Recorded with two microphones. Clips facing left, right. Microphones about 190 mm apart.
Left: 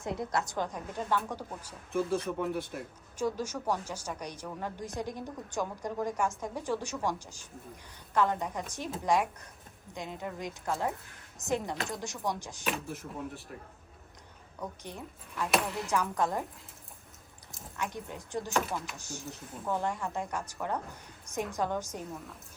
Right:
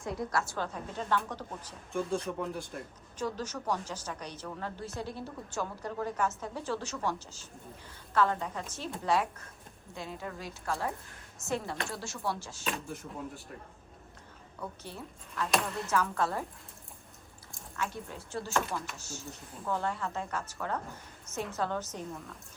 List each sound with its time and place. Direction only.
0.0 s a woman's voice: 20° left (ahead or behind)
12.6 s speech: centre (ahead or behind)
14.6 s a woman's voice: 15° left (ahead or behind)
15.4 s speech: centre (ahead or behind)
15.9 s a woman's voice: 15° left (ahead or behind)
17.7 s a woman's voice: 15° left (ahead or behind)